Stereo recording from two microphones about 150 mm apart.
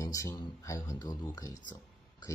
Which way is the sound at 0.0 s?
20° left (ahead or behind).